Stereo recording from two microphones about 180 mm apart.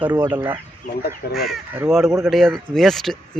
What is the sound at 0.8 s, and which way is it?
Speech, 55° left (ahead or behind).